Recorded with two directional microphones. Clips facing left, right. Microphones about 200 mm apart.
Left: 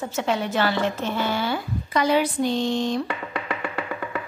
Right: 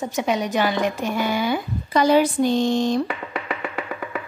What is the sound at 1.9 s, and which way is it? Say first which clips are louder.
Speech: right 4 dB; 40° right (ahead or behind).